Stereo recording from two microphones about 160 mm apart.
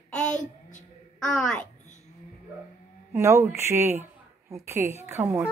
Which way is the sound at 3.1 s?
15° right (ahead or behind).